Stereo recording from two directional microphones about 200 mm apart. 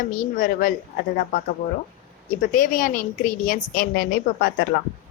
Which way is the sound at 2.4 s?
45° left (ahead or behind).